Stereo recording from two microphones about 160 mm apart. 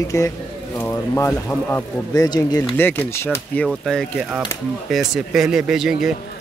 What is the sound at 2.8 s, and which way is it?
Speech, 15° left (ahead or behind).